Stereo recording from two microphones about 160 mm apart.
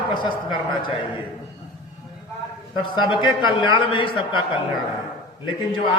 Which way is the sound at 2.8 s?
30° left (ahead or behind).